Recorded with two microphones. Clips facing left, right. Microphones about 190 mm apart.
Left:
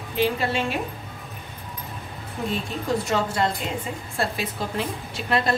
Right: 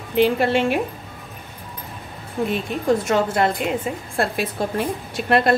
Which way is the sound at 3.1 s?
55° right (ahead or behind).